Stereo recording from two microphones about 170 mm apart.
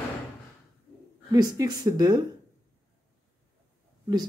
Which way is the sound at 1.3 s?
20° right (ahead or behind).